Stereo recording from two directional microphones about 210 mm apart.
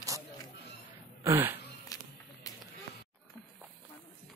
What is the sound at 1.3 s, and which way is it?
Speech, 10° right (ahead or behind).